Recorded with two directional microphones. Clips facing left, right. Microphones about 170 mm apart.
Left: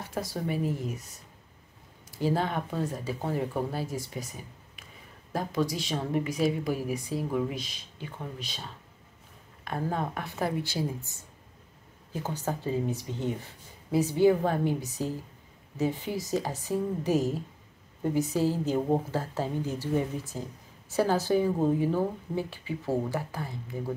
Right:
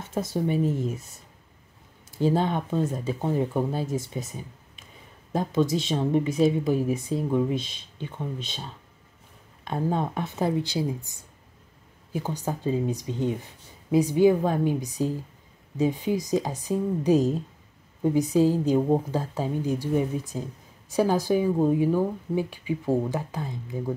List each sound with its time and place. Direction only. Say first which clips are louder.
0.0 s speech: right 6 dB; 20° right (ahead or behind)
2.0 s speech: right 5 dB; 25° right (ahead or behind)
9.7 s speech: right 4 dB; 25° right (ahead or behind)